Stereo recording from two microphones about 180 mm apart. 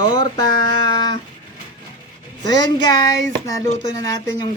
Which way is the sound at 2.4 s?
25° left (ahead or behind).